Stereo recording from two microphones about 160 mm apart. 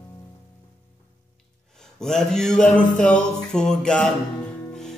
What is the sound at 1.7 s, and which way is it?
Mantra, 5° left (ahead or behind).